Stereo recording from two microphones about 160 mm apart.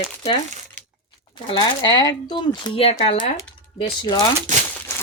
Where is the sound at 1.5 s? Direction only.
25° left (ahead or behind).